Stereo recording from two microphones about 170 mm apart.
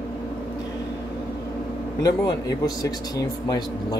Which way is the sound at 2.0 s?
20° left (ahead or behind).